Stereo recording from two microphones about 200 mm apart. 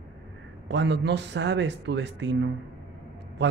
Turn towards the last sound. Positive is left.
turn(degrees=-60)  # may be behind; listen again after turning